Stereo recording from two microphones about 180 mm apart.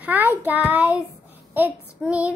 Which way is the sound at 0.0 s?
10° right (ahead or behind).